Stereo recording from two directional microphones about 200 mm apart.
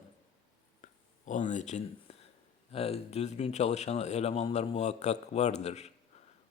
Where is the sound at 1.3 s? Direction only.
40° left (ahead or behind).